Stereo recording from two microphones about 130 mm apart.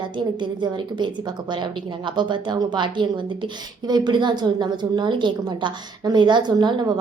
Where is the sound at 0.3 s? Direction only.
35° right (ahead or behind).